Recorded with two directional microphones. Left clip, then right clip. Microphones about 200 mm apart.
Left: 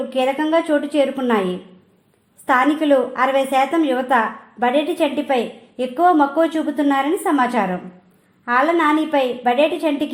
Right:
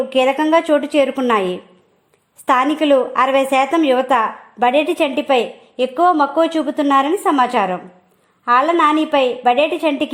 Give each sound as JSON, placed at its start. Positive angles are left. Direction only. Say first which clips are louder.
{"t": 0.1, "sound": "a woman's voice", "louder": "right 4 dB", "side_deg": -45}
{"t": 2.5, "sound": "a woman's voice", "louder": "right 2 dB", "side_deg": -45}